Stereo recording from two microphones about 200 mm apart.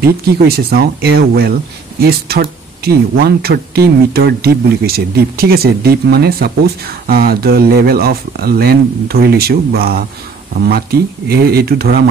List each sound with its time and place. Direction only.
0.4 s speech: 50° right (ahead or behind)